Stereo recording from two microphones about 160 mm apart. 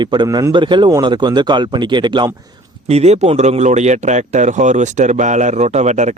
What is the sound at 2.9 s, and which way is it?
A man's voice, 40° right (ahead or behind).